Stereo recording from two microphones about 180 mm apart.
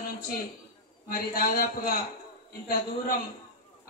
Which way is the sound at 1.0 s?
50° left (ahead or behind).